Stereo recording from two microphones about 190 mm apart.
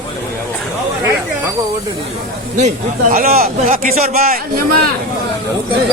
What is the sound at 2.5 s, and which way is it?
Speech, 40° right (ahead or behind).